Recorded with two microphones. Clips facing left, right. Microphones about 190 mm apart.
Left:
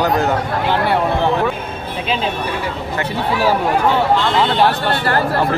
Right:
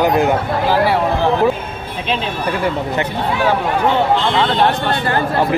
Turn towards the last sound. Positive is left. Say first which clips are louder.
# even
turn(degrees=0)  # may be behind; listen again after turning